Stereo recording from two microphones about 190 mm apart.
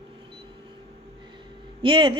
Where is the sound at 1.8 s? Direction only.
25° right (ahead or behind).